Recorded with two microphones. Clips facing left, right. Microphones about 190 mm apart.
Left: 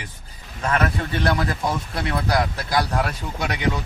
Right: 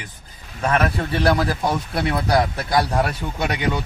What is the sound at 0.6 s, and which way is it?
Speech, 30° right (ahead or behind).